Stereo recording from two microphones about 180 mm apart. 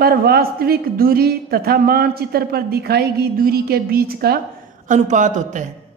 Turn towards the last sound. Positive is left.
turn(degrees=-45)  # may be behind; listen again after turning